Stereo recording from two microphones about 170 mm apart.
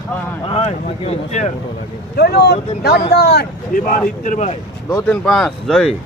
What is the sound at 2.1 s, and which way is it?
Speech, 70° left (ahead or behind).